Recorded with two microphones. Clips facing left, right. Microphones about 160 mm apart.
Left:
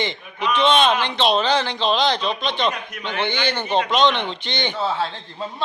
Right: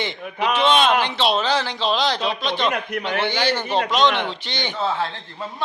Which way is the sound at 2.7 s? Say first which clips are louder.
Right 6 dB; 60° right (ahead or behind).